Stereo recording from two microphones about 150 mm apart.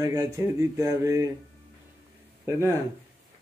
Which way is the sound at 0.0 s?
25° right (ahead or behind).